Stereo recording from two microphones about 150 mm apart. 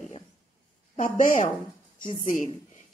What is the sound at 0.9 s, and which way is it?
A woman's voice, 55° left (ahead or behind).